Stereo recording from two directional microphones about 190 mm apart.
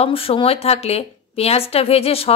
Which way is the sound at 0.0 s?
30° left (ahead or behind).